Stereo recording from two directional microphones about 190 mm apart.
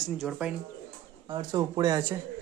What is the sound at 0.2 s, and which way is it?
Speech, 5° right (ahead or behind).